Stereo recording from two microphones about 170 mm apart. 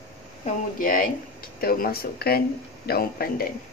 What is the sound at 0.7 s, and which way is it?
Speech, 55° left (ahead or behind).